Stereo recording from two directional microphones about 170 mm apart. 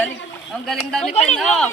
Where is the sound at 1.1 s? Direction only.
40° left (ahead or behind).